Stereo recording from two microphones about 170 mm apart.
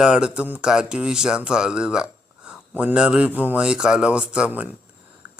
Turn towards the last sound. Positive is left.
turn(degrees=-5)  # may be behind; listen again after turning